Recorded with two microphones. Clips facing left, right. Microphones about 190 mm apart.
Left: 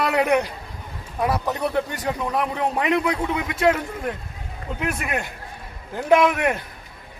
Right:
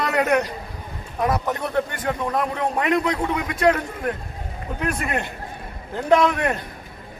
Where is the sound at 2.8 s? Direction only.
10° left (ahead or behind).